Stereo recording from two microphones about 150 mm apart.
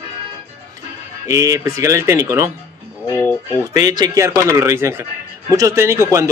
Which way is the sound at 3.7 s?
25° right (ahead or behind).